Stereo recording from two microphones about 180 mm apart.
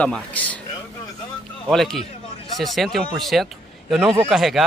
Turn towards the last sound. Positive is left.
turn(degrees=0)  # may be behind; listen again after turning